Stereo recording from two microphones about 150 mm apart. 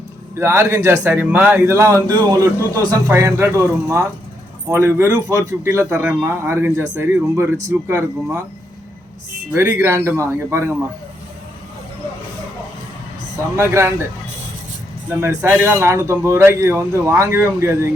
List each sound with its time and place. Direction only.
0.3 s a man's voice: 15° right (ahead or behind)
9.6 s a man's voice: 15° right (ahead or behind)
13.6 s a man's voice: 15° right (ahead or behind)
15.2 s a man's voice: 15° right (ahead or behind)